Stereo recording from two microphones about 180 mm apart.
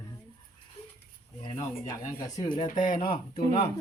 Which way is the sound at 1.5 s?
15° left (ahead or behind).